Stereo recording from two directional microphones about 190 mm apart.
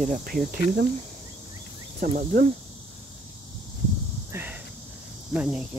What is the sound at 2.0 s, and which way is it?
Speech, 45° right (ahead or behind).